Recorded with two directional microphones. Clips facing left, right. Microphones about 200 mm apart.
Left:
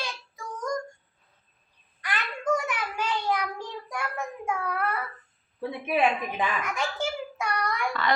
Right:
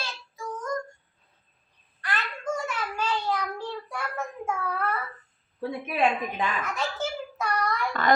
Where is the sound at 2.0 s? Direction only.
15° left (ahead or behind).